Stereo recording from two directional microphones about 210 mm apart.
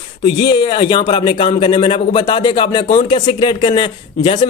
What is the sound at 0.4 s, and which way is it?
A man's voice, 20° left (ahead or behind).